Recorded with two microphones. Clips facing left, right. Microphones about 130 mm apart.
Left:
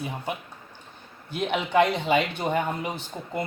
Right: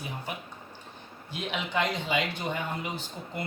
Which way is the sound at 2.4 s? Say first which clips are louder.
Left 6 dB; 50° left (ahead or behind).